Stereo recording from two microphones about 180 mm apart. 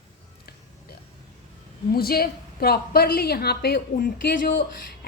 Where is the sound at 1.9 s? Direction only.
55° left (ahead or behind).